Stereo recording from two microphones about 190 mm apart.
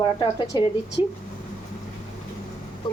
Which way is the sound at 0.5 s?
20° left (ahead or behind).